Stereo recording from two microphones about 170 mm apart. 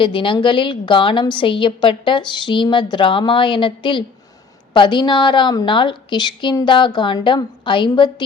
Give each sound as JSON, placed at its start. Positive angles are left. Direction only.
{"t": 0.0, "sound": "a woman's voice", "side_deg": 30}